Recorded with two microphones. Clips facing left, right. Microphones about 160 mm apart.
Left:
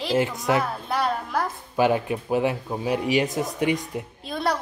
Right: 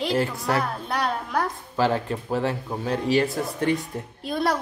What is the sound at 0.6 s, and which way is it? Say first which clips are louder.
Speech: left 1 dB; centre (ahead or behind).